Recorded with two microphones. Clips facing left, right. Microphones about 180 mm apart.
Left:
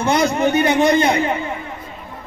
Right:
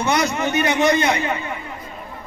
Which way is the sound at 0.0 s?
30° left (ahead or behind).